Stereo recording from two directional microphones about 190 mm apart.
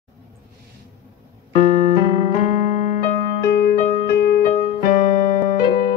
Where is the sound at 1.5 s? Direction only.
40° left (ahead or behind).